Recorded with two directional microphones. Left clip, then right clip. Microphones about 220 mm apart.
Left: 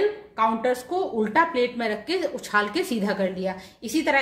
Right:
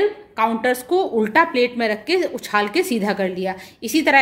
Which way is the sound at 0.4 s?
40° right (ahead or behind).